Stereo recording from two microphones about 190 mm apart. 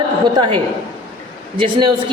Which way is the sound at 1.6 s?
25° right (ahead or behind).